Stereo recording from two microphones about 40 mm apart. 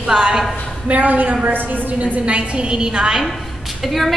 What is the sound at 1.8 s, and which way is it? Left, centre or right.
A woman's voice, right.